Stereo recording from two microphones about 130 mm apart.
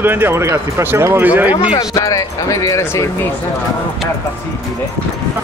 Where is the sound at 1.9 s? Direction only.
25° left (ahead or behind).